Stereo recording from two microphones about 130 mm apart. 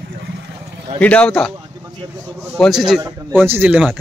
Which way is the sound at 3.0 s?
30° right (ahead or behind).